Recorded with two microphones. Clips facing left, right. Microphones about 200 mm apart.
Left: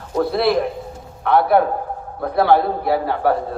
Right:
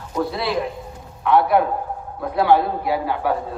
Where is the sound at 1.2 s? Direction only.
40° left (ahead or behind).